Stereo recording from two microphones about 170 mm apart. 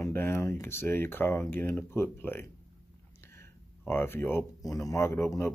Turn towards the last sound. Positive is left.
turn(degrees=15)  # may be behind; listen again after turning